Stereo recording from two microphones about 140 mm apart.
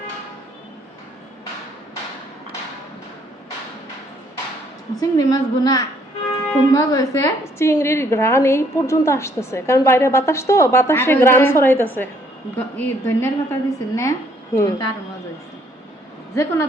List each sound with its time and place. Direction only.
4.9 s a woman's voice: 25° left (ahead or behind)
16.3 s a woman's voice: 20° left (ahead or behind)